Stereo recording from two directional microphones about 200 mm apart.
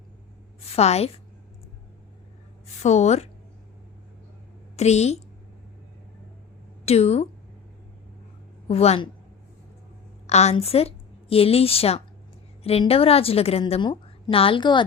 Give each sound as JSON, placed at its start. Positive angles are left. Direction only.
{"t": 0.7, "sound": "a woman's voice", "side_deg": 30}
{"t": 2.8, "sound": "a woman's voice", "side_deg": 35}
{"t": 4.8, "sound": "a woman's voice", "side_deg": 35}
{"t": 6.8, "sound": "a woman's voice", "side_deg": 30}
{"t": 8.6, "sound": "a woman's voice", "side_deg": 30}
{"t": 10.2, "sound": "a woman's voice", "side_deg": 35}